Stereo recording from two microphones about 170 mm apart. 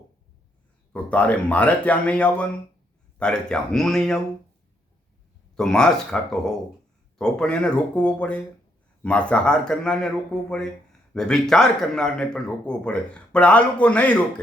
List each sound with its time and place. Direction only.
0.9 s speech: 10° left (ahead or behind)
5.5 s speech: 5° left (ahead or behind)
11.1 s speech: 5° left (ahead or behind)